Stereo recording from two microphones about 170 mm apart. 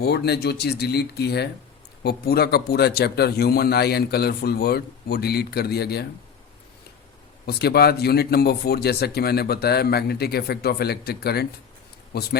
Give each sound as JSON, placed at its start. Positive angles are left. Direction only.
{"t": 0.0, "sound": "speech", "side_deg": 75}
{"t": 7.4, "sound": "speech", "side_deg": 70}